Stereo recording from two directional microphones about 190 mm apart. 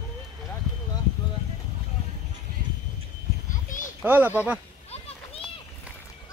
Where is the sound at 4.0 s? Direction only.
10° right (ahead or behind).